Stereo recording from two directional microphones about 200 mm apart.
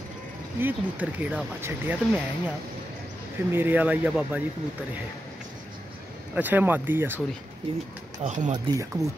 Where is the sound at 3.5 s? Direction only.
10° right (ahead or behind).